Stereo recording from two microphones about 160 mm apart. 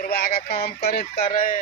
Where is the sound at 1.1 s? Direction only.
40° left (ahead or behind).